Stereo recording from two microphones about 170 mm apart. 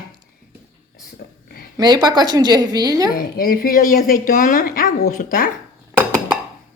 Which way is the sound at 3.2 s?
60° left (ahead or behind).